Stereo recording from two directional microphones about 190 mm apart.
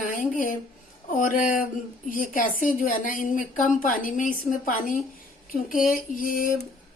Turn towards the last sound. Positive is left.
turn(degrees=50)  # may be behind; listen again after turning